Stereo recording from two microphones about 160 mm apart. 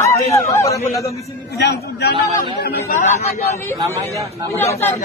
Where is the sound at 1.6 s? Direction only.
90° left.